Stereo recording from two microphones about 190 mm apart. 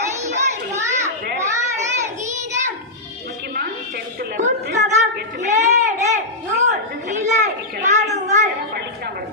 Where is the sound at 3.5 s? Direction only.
55° right (ahead or behind).